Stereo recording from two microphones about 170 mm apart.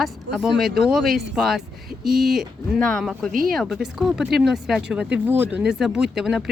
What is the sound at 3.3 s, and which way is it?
Speech, 55° right (ahead or behind).